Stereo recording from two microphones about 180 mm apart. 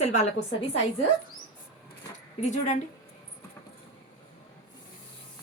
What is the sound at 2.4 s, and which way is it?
Speech, 40° left (ahead or behind).